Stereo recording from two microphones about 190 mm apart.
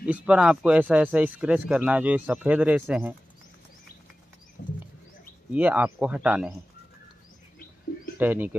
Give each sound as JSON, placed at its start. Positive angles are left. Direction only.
{"t": 0.0, "sound": "speech", "side_deg": -5}
{"t": 4.6, "sound": "wild animals", "side_deg": 50}
{"t": 5.5, "sound": "speech", "side_deg": -10}
{"t": 8.2, "sound": "speech", "side_deg": -10}